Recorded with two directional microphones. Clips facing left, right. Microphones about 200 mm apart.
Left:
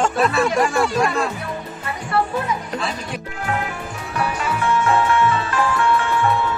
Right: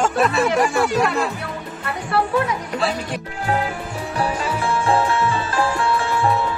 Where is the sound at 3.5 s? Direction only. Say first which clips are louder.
Right 3 dB; 30° right (ahead or behind).